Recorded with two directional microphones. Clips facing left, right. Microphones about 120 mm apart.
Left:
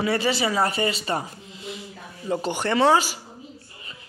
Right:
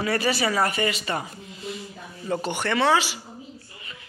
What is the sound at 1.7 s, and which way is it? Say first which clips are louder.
Speech: right 1 dB; 15° left (ahead or behind).